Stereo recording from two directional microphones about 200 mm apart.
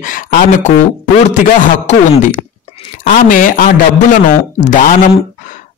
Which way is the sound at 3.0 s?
40° left (ahead or behind).